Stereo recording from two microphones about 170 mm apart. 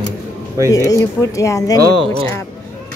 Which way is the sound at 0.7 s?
20° left (ahead or behind).